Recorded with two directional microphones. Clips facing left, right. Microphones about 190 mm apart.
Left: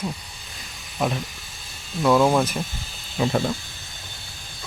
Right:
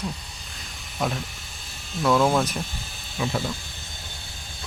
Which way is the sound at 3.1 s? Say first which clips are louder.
Left 5 dB; 45° left (ahead or behind).